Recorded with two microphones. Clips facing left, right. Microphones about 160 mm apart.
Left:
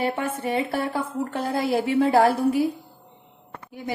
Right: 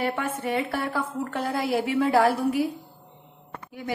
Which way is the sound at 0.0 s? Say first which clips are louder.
Left 2 dB; 25° left (ahead or behind).